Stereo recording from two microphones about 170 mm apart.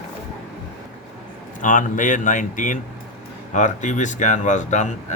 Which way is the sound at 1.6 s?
50° left (ahead or behind).